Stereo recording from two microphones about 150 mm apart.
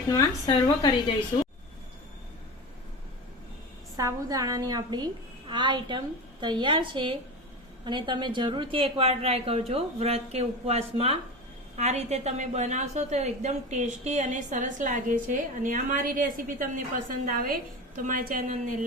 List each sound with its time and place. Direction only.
0.1 s a woman's voice: 25° left (ahead or behind)
3.9 s a woman's voice: 25° right (ahead or behind); by 18.8 s 55° right (ahead or behind)